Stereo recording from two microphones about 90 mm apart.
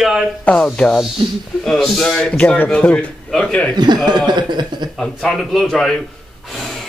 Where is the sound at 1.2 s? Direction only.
70° right (ahead or behind).